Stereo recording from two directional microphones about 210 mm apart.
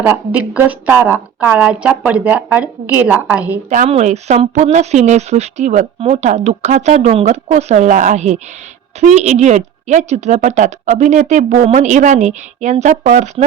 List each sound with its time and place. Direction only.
0.0 s a woman's voice: 10° right (ahead or behind)
3.7 s speech: 35° right (ahead or behind)